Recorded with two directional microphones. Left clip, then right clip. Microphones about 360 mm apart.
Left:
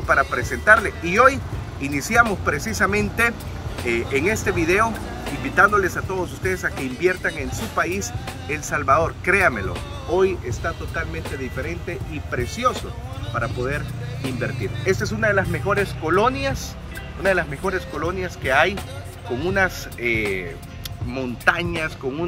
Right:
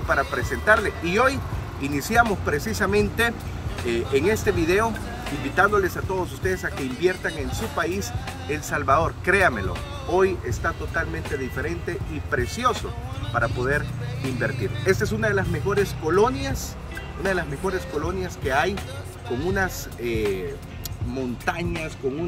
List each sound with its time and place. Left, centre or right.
0.1 s speech: centre